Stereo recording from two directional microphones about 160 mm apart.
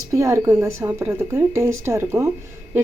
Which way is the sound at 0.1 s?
20° right (ahead or behind).